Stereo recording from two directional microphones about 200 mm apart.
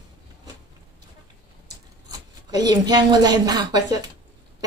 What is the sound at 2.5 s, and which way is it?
A child's voice, 20° right (ahead or behind).